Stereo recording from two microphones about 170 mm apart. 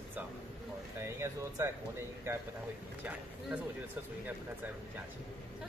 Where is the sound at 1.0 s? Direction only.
15° right (ahead or behind).